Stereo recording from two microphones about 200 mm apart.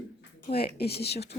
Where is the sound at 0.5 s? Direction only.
50° left (ahead or behind).